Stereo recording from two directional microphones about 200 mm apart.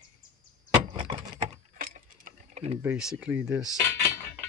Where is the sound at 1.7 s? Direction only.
40° right (ahead or behind).